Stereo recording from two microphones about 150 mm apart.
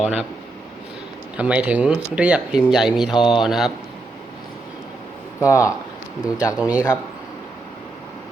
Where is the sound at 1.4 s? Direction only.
10° right (ahead or behind).